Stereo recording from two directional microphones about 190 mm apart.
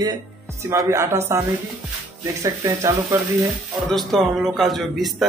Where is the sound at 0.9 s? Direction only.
15° right (ahead or behind).